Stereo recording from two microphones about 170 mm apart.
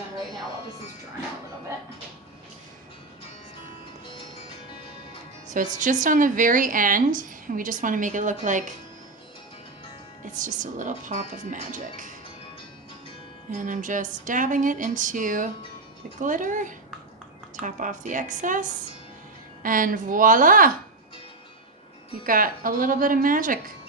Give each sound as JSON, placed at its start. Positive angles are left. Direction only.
{"t": 5.5, "sound": "speech", "side_deg": -50}
{"t": 10.4, "sound": "speech", "side_deg": -50}
{"t": 13.5, "sound": "speech", "side_deg": -50}
{"t": 19.6, "sound": "speech", "side_deg": -55}
{"t": 22.2, "sound": "speech", "side_deg": -55}